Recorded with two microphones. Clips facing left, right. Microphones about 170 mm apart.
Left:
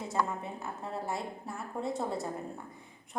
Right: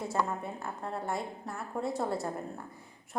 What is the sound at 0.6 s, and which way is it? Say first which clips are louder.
A woman's voice: right 1 dB; centre (ahead or behind).